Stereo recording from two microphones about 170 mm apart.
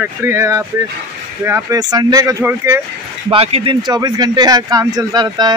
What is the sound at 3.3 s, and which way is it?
Speech, 35° right (ahead or behind).